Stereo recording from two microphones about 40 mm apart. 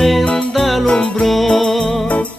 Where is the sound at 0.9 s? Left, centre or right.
Left.